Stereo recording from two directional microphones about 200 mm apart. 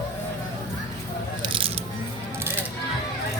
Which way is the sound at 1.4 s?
25° right (ahead or behind).